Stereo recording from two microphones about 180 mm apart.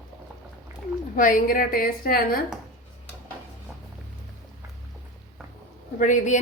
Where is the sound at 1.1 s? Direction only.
50° left (ahead or behind).